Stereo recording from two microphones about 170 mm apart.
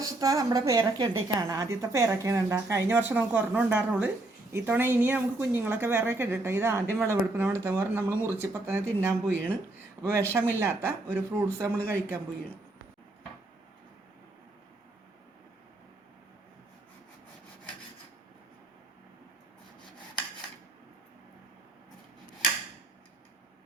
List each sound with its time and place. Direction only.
0.0 s a woman's voice: 20° right (ahead or behind)